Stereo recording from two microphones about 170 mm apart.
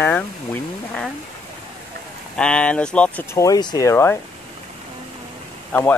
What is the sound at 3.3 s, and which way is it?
Speech, 20° left (ahead or behind).